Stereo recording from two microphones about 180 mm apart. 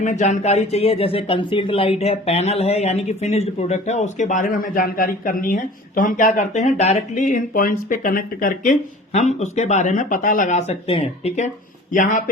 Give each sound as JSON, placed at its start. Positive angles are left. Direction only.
{"t": 0.0, "sound": "speech", "side_deg": 40}